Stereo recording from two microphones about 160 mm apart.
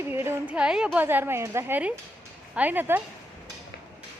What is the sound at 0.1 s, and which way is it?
A woman's voice, 15° right (ahead or behind).